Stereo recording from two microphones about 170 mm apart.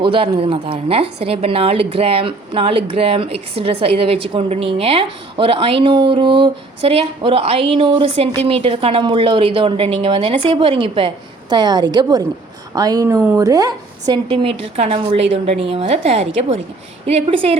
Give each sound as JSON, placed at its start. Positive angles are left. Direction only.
{"t": 0.0, "sound": "a woman's voice", "side_deg": -30}